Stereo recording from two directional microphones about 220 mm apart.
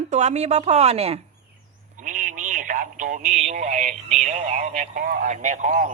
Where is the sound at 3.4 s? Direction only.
35° right (ahead or behind).